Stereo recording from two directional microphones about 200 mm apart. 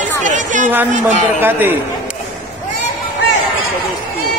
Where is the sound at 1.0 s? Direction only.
10° right (ahead or behind).